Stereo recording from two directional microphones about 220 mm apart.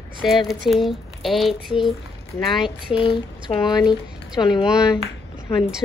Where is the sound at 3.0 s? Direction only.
25° left (ahead or behind).